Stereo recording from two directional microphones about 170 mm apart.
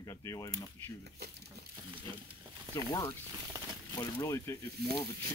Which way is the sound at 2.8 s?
20° left (ahead or behind).